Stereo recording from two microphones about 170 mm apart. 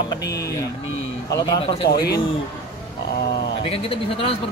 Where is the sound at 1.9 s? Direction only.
65° left (ahead or behind).